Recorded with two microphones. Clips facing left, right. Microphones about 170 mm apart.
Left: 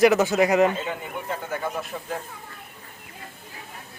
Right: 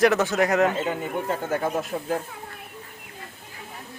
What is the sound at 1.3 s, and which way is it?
Speech, 45° right (ahead or behind).